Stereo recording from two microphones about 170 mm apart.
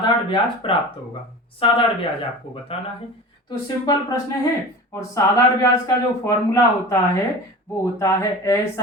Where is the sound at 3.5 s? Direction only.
25° left (ahead or behind).